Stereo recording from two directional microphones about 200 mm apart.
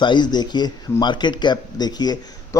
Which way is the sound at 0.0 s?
20° left (ahead or behind).